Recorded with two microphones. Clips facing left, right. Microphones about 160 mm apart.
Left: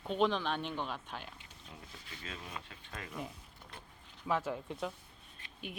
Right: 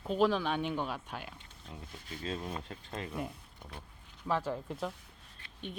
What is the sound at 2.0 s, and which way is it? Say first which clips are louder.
Speech: right 10 dB; 35° right (ahead or behind).